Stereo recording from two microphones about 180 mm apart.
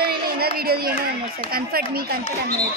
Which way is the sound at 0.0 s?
55° right (ahead or behind).